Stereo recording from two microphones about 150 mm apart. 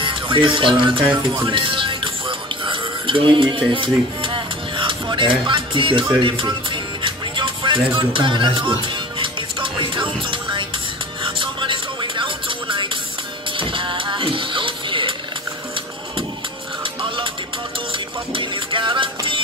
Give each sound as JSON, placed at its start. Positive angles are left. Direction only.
{"t": 0.0, "sound": "music", "side_deg": -35}
{"t": 18.3, "sound": "music", "side_deg": -35}